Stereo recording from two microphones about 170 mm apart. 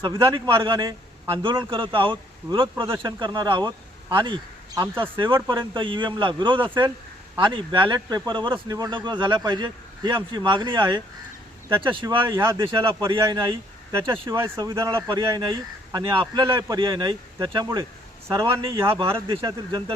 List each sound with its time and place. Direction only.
0.0 s speech: 30° right (ahead or behind)
12.4 s speech: 15° right (ahead or behind)
13.1 s speech: 30° right (ahead or behind)
13.9 s speech: 15° right (ahead or behind)
19.4 s speech: 20° right (ahead or behind)